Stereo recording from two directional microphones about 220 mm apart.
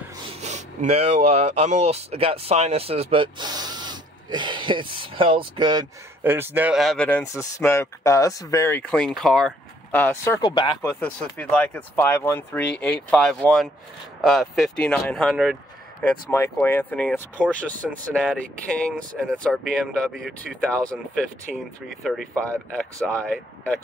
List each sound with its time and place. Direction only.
0.3 s speech: 30° right (ahead or behind)
6.2 s speech: 10° right (ahead or behind); by 10.5 s 10° left (ahead or behind)
10.5 s speech: 25° left (ahead or behind)
10.8 s speech: 10° left (ahead or behind)